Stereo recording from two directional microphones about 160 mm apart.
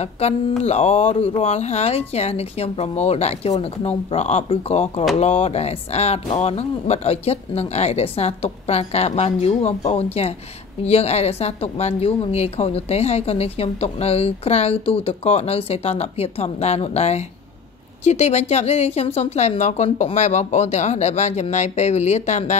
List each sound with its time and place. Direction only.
0.0 s a woman's voice: 40° left (ahead or behind)